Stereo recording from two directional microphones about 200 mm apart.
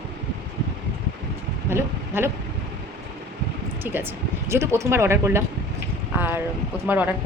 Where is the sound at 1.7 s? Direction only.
10° right (ahead or behind).